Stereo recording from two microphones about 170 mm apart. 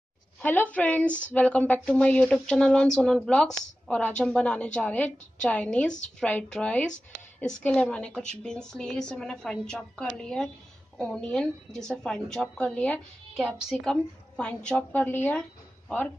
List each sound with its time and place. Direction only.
0.4 s a woman's voice: 10° left (ahead or behind)